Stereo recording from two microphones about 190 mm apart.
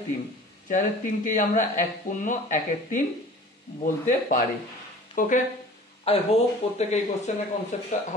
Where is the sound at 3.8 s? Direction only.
45° left (ahead or behind).